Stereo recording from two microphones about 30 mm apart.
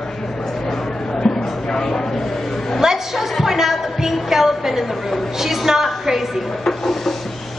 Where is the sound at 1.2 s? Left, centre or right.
Centre.